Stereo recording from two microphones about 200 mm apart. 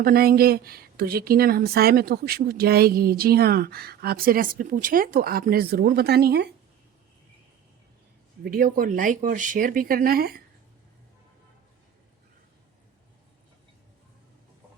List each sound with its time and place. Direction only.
0.0 s speech: 50° right (ahead or behind)
8.4 s speech: 45° right (ahead or behind)